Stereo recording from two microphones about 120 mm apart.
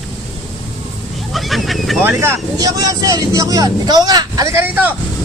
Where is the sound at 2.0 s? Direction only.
20° right (ahead or behind).